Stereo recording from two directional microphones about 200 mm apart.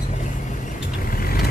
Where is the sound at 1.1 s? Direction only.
45° left (ahead or behind).